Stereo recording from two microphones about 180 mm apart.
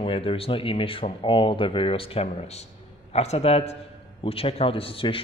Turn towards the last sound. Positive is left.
turn(degrees=30)  # may be behind; listen again after turning